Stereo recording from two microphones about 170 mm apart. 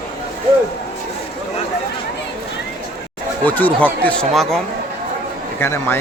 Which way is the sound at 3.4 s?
10° left (ahead or behind).